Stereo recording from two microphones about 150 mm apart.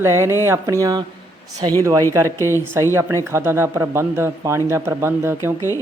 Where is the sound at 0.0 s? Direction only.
15° right (ahead or behind).